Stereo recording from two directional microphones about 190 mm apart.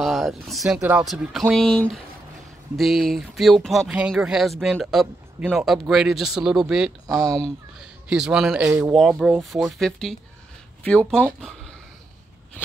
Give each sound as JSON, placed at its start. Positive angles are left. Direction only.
{"t": 0.0, "sound": "speech", "side_deg": 0}
{"t": 7.1, "sound": "speech", "side_deg": -20}
{"t": 8.1, "sound": "speech", "side_deg": -5}
{"t": 8.6, "sound": "speech", "side_deg": -15}
{"t": 8.9, "sound": "speech", "side_deg": 0}